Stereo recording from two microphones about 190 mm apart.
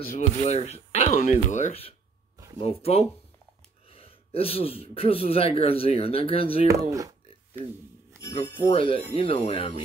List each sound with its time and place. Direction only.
0.0 s speech: 40° left (ahead or behind)
2.3 s a sound: 15° right (ahead or behind)
2.6 s speech: 30° left (ahead or behind)
6.7 s speech: 15° right (ahead or behind)
8.6 s speech: 25° left (ahead or behind)